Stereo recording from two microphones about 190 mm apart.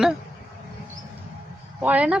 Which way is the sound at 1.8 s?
5° right (ahead or behind).